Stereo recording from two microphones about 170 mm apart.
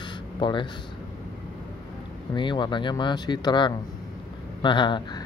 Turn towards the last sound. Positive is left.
turn(degrees=25)  # may be behind; listen again after turning